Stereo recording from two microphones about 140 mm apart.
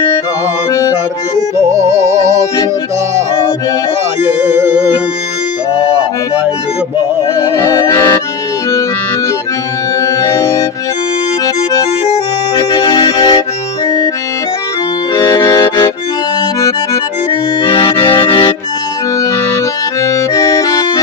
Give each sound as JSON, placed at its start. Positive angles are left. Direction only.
{"t": 0.7, "sound": "music", "side_deg": 20}
{"t": 1.7, "sound": "music", "side_deg": -25}
{"t": 4.5, "sound": "music", "side_deg": -15}
{"t": 7.3, "sound": "accordion", "side_deg": 20}
{"t": 9.9, "sound": "music", "side_deg": 25}
{"t": 12.5, "sound": "music", "side_deg": 30}
{"t": 15.1, "sound": "accordion", "side_deg": 25}
{"t": 17.3, "sound": "accordion", "side_deg": 35}
{"t": 19.5, "sound": "accordion", "side_deg": 20}